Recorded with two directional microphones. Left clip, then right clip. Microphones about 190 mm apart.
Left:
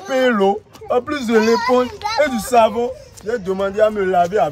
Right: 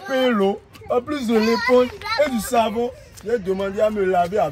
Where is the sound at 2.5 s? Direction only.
Centre (ahead or behind).